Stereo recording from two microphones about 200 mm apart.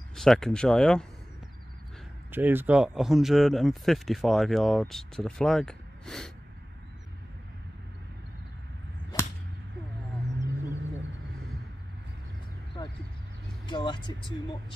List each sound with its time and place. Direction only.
0.1 s speech: centre (ahead or behind)
2.3 s speech: 10° right (ahead or behind)
9.1 s whip: 20° left (ahead or behind)
13.7 s speech: 25° left (ahead or behind)